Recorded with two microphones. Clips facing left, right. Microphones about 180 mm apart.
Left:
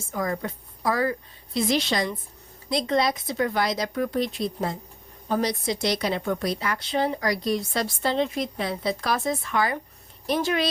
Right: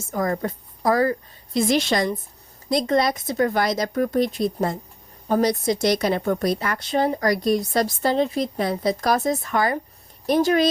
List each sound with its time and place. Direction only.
0.1 s a woman's voice: 45° right (ahead or behind)